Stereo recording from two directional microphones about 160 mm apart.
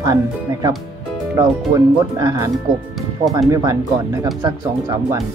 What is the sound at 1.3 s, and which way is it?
Speech, 20° right (ahead or behind).